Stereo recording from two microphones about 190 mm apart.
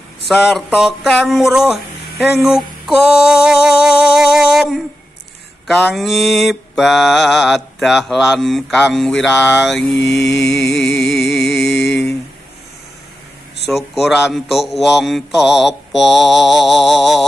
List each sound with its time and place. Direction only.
0.3 s mantra: centre (ahead or behind)
3.2 s music: 5° right (ahead or behind)
5.7 s mantra: centre (ahead or behind)
9.9 s music: 65° left (ahead or behind)
13.7 s mantra: centre (ahead or behind)